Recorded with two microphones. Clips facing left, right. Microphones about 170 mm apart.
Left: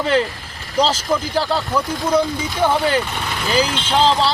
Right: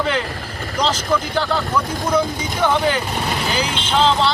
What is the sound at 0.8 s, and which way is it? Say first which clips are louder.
Speech: left 2 dB; 30° left (ahead or behind).